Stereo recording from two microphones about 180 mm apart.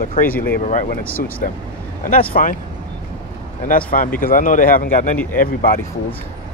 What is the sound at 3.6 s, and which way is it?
Speech, 50° left (ahead or behind).